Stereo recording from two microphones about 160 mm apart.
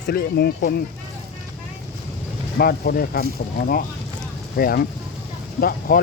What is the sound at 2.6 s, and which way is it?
Speech, 65° left (ahead or behind).